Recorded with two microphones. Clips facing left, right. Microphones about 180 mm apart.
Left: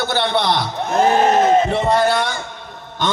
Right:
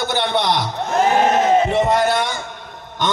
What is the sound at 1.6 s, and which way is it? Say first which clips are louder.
Speech: even; 15° right (ahead or behind).